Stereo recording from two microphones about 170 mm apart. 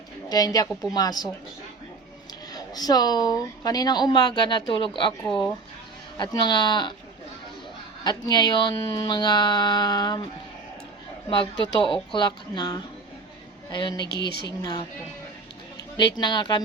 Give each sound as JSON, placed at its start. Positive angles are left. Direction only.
{"t": 0.3, "sound": "speech", "side_deg": 20}
{"t": 0.7, "sound": "a woman's voice", "side_deg": 0}
{"t": 0.9, "sound": "speech", "side_deg": 20}
{"t": 2.5, "sound": "speech", "side_deg": 20}
{"t": 6.1, "sound": "speech", "side_deg": 25}
{"t": 8.0, "sound": "speech", "side_deg": 25}
{"t": 11.3, "sound": "speech", "side_deg": 30}
{"t": 14.0, "sound": "speech", "side_deg": 80}
{"t": 14.4, "sound": "speech", "side_deg": 20}
{"t": 16.1, "sound": "speech", "side_deg": 25}